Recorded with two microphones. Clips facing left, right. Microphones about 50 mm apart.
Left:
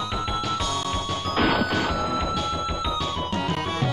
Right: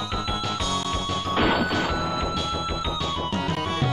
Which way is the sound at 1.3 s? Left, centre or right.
Centre.